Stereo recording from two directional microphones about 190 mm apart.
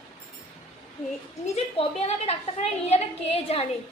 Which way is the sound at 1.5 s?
35° left (ahead or behind).